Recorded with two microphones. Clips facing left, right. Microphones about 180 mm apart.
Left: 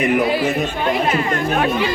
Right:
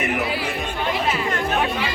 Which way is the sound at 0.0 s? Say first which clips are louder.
Left 7 dB; 45° left (ahead or behind).